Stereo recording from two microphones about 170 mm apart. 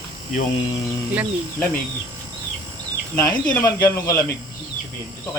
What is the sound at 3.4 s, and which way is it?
Speech, 15° left (ahead or behind).